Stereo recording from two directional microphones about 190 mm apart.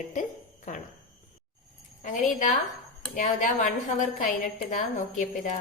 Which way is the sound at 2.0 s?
40° left (ahead or behind).